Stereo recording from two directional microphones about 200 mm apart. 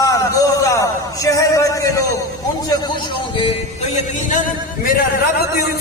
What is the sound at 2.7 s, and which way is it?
Speech, 20° left (ahead or behind).